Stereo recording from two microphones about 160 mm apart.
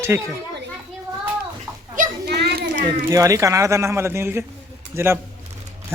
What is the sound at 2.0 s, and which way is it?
Children playing, 85° right.